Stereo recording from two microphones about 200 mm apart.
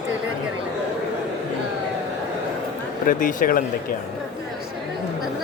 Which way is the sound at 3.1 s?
45° left (ahead or behind).